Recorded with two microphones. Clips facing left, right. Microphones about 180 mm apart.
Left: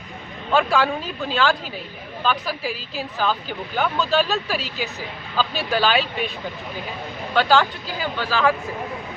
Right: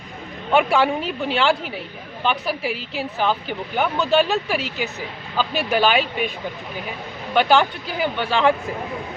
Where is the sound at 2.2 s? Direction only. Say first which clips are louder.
Right 1 dB; 20° right (ahead or behind).